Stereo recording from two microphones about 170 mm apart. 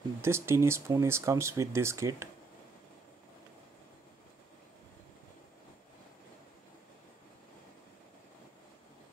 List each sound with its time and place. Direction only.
0.2 s speech: 15° right (ahead or behind)